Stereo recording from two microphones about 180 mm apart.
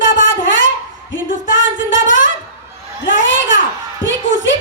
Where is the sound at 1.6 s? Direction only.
90° left.